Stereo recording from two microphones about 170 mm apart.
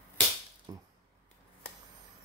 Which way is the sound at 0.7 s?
20° right (ahead or behind).